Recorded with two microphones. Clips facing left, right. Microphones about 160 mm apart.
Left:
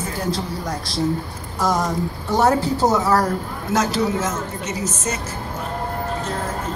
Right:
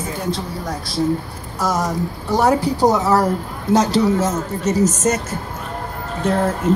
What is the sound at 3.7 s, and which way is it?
A woman's voice, 40° right (ahead or behind).